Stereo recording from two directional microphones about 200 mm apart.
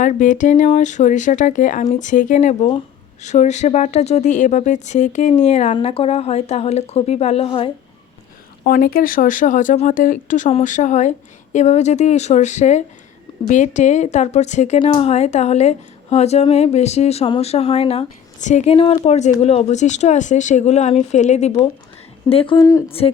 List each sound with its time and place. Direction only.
0.0 s speech: 40° left (ahead or behind)
8.6 s speech: 45° left (ahead or behind); by 22.5 s 30° left (ahead or behind)
22.5 s speech: 15° left (ahead or behind)
22.9 s speech: 30° left (ahead or behind)